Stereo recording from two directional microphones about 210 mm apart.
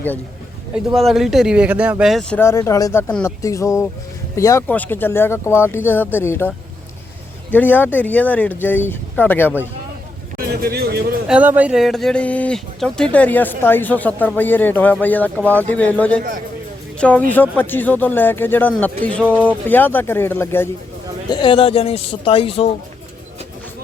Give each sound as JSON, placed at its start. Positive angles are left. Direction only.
{"t": 0.9, "sound": "speech", "side_deg": 0}
{"t": 2.4, "sound": "speech", "side_deg": 15}
{"t": 7.5, "sound": "speech", "side_deg": 10}
{"t": 10.3, "sound": "a sound", "side_deg": -50}
{"t": 11.3, "sound": "speech", "side_deg": -5}
{"t": 21.2, "sound": "speech", "side_deg": 25}